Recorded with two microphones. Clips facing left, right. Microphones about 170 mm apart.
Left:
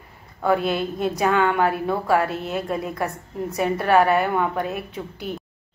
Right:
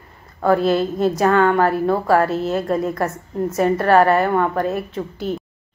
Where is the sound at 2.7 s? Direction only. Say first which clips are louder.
Right 5 dB; centre (ahead or behind).